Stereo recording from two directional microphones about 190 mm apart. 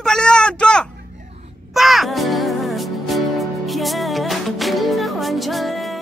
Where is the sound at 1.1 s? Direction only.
35° right (ahead or behind).